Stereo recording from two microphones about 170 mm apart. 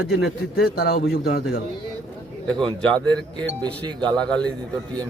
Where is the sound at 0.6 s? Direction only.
65° left (ahead or behind).